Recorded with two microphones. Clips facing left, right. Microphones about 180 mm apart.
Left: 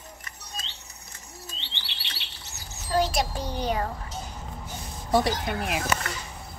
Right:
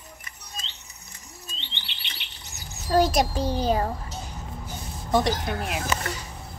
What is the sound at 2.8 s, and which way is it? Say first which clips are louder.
Speech: right 4 dB; 45° right (ahead or behind).